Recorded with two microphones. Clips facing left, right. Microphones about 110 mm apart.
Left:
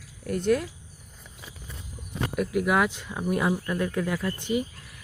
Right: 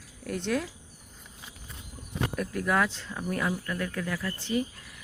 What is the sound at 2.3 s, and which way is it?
Speech, 10° left (ahead or behind).